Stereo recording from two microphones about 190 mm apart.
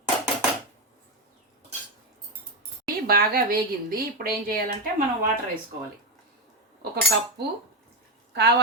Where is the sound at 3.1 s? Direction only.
50° right (ahead or behind).